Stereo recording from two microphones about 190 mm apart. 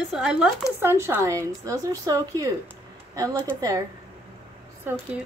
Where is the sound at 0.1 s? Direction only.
5° right (ahead or behind).